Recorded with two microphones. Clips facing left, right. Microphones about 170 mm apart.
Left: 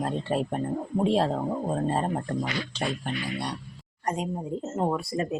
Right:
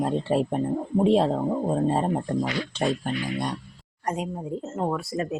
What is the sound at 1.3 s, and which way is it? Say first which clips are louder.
Speech: right 3 dB; 10° right (ahead or behind).